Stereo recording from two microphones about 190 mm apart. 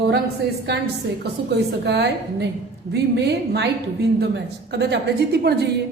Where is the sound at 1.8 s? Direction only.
60° right (ahead or behind).